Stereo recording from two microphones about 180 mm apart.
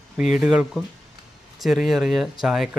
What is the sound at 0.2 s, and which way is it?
Speech, 5° right (ahead or behind).